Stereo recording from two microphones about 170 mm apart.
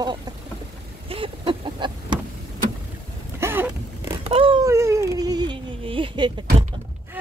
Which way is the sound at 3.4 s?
10° right (ahead or behind).